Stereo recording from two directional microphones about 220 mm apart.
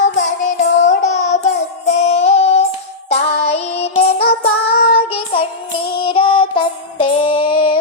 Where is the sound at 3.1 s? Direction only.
30° left (ahead or behind).